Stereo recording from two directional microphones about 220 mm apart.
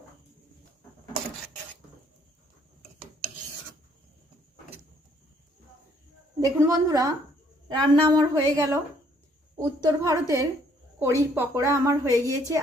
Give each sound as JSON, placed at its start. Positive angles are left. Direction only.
{"t": 6.4, "sound": "a woman's voice", "side_deg": -15}